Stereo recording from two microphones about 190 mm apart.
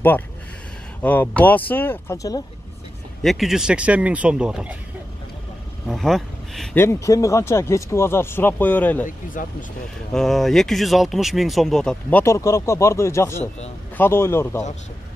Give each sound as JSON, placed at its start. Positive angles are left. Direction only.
{"t": 1.0, "sound": "speech", "side_deg": 10}
{"t": 3.2, "sound": "speech", "side_deg": 0}
{"t": 5.9, "sound": "speech", "side_deg": 0}
{"t": 6.8, "sound": "speech", "side_deg": 15}
{"t": 9.0, "sound": "speech", "side_deg": 45}
{"t": 10.1, "sound": "speech", "side_deg": 0}